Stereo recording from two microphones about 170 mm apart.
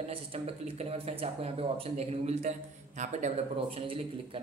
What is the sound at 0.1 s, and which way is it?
Speech, 35° right (ahead or behind).